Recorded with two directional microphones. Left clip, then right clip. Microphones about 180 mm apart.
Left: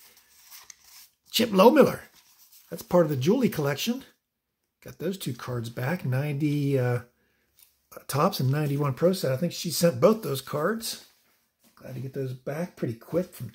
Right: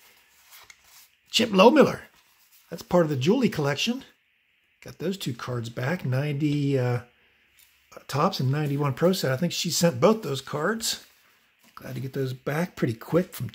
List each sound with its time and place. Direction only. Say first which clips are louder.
1.3 s speech: right 1 dB; centre (ahead or behind)
8.9 s speech: right 1 dB; 10° right (ahead or behind)
11.8 s speech: right 3 dB; 30° right (ahead or behind)